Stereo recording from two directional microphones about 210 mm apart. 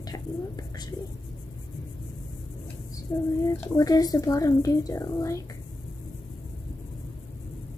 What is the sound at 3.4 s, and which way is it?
A child's voice, 15° left (ahead or behind).